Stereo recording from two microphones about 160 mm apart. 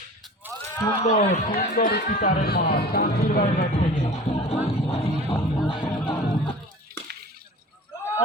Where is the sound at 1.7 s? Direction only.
65° left (ahead or behind).